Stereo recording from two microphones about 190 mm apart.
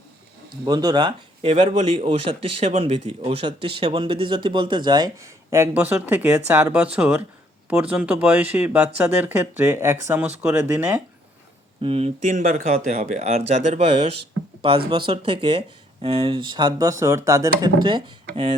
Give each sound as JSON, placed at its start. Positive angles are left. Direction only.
{"t": 0.5, "sound": "speech", "side_deg": -20}
{"t": 11.8, "sound": "speech", "side_deg": -30}